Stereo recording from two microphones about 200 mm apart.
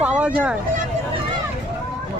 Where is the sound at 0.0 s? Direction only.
5° right (ahead or behind).